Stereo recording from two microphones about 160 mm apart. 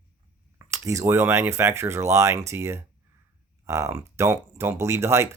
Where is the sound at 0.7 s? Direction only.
20° right (ahead or behind).